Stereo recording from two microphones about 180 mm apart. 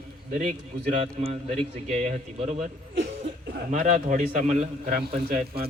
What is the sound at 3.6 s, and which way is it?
A man's voice, 45° right (ahead or behind).